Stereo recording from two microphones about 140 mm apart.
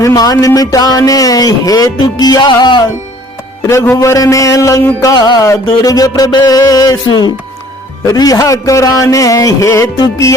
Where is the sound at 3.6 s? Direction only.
20° left (ahead or behind).